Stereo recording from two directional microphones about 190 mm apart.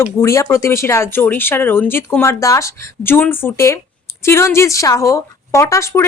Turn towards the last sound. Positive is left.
turn(degrees=15)  # may be behind; listen again after turning